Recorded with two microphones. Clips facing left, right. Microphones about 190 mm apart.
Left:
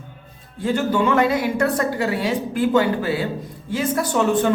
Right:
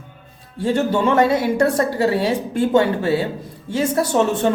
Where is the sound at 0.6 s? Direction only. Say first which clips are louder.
Right 2 dB; 30° right (ahead or behind).